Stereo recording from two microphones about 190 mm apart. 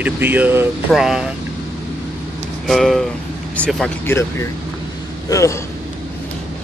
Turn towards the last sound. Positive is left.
turn(degrees=15)  # may be behind; listen again after turning